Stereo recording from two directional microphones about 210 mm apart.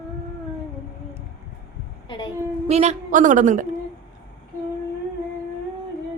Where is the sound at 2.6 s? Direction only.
30° right (ahead or behind).